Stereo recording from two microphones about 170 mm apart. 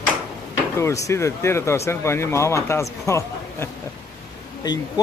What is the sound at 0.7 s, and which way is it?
Speech, 15° left (ahead or behind).